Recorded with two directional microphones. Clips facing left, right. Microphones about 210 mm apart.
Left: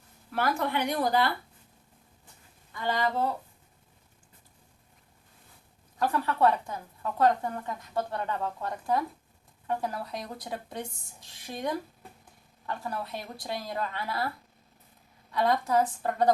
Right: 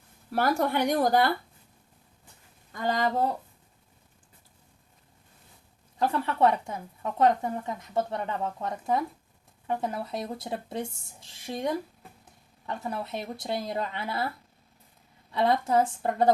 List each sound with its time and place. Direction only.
0.3 s speech: 40° right (ahead or behind)
2.7 s speech: 45° right (ahead or behind)
6.0 s speech: 25° right (ahead or behind)
15.3 s speech: 25° right (ahead or behind)